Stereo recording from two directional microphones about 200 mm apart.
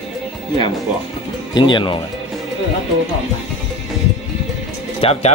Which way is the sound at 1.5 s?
25° left (ahead or behind).